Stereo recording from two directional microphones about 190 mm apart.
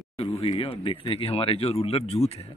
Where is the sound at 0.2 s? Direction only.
30° left (ahead or behind).